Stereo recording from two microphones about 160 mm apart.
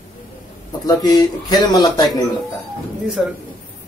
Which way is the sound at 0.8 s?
25° left (ahead or behind).